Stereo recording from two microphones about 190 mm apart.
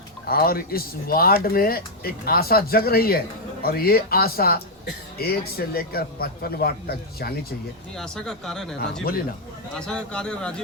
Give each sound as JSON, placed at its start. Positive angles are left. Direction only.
{"t": 0.3, "sound": "a man's voice", "side_deg": 50}
{"t": 7.9, "sound": "speech", "side_deg": 5}